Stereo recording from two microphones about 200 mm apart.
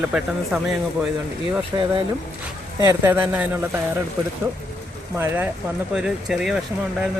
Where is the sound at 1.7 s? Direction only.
15° right (ahead or behind).